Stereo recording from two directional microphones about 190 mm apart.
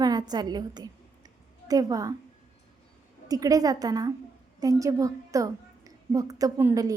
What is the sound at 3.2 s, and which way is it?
A woman's voice, 20° right (ahead or behind).